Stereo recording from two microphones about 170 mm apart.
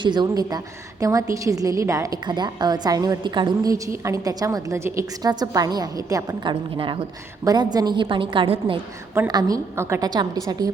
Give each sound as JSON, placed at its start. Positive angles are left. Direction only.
{"t": 0.0, "sound": "a woman's voice", "side_deg": -25}